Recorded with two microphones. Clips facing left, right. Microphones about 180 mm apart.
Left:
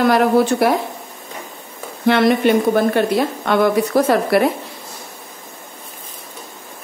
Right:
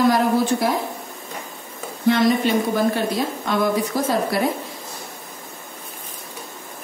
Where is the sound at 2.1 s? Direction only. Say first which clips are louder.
Left 4 dB; 65° left (ahead or behind).